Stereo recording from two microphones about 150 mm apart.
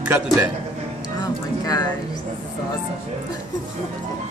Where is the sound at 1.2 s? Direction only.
25° left (ahead or behind).